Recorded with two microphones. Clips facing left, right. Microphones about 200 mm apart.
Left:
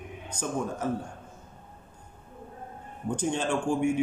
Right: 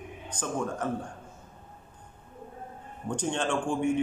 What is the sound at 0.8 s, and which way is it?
Speech, 10° left (ahead or behind).